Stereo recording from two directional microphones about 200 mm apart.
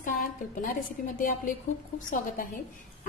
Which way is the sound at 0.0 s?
40° left (ahead or behind).